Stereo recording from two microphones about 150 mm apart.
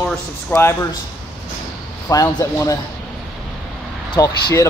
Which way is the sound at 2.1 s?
25° left (ahead or behind).